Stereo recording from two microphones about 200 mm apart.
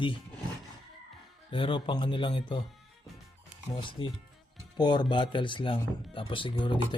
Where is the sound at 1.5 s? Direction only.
25° left (ahead or behind).